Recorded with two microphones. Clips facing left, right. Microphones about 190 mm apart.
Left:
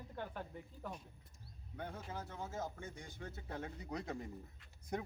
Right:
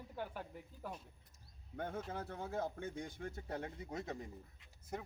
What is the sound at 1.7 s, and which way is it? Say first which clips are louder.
Speech: right 4 dB; 50° right (ahead or behind).